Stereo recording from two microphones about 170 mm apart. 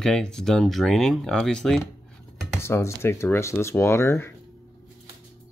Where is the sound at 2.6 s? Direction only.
15° left (ahead or behind).